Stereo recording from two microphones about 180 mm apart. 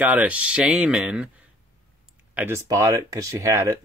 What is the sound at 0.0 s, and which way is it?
Speech, 5° right (ahead or behind).